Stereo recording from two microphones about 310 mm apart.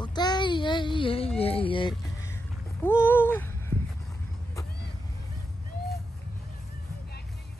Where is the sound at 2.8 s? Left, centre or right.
Centre.